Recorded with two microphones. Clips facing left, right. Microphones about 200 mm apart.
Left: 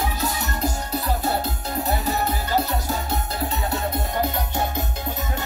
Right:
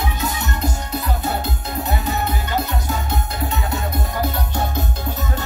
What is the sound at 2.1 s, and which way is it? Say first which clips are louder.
Music: even; 35° left (ahead or behind).